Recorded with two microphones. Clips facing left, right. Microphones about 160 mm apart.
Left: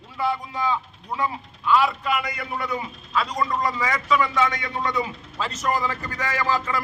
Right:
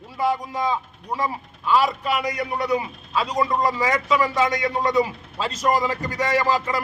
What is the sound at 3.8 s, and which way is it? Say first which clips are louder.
Speech: right 2 dB; 35° right (ahead or behind).